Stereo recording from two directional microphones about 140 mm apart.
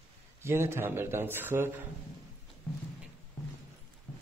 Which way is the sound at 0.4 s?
20° right (ahead or behind).